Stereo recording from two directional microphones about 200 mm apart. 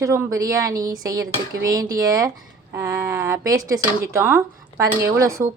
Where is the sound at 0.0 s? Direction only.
15° right (ahead or behind).